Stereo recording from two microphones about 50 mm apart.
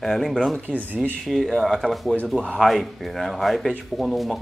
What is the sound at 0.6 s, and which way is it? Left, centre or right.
Speech, right.